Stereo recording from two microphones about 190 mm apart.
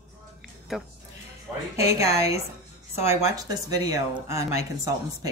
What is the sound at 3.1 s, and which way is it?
A woman's voice, 15° right (ahead or behind).